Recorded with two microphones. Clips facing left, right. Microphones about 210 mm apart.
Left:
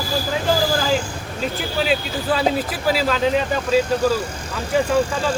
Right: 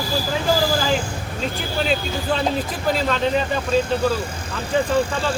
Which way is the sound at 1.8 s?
5° left (ahead or behind).